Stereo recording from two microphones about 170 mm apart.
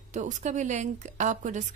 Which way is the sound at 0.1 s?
45° right (ahead or behind).